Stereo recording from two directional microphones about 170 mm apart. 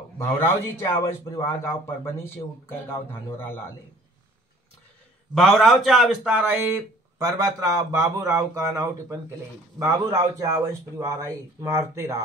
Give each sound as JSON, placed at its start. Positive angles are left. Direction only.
{"t": 0.2, "sound": "a man's voice", "side_deg": 15}
{"t": 3.1, "sound": "a man's voice", "side_deg": 15}
{"t": 5.3, "sound": "a man's voice", "side_deg": 0}